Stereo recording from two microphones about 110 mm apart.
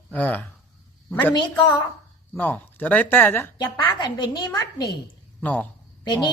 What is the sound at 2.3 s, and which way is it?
Speech, 15° left (ahead or behind).